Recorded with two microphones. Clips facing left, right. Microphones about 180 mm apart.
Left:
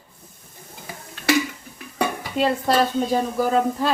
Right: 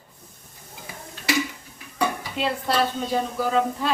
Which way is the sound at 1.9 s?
45° left (ahead or behind).